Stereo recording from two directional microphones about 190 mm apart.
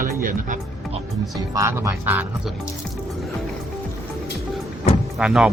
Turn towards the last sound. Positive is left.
turn(degrees=-5)  # may be behind; listen again after turning